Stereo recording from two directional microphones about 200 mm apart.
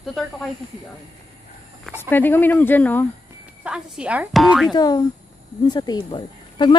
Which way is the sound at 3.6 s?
5° right (ahead or behind).